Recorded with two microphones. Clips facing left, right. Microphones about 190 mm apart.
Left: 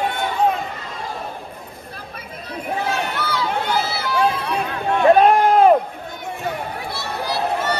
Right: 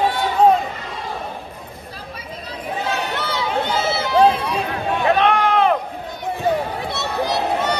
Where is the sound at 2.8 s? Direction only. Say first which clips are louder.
Even; 55° left (ahead or behind).